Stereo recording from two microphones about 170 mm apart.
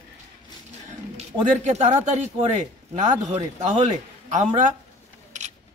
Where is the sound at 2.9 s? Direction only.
45° right (ahead or behind).